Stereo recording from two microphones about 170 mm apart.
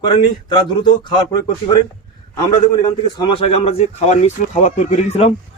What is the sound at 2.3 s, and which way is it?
A man's voice, 25° left (ahead or behind).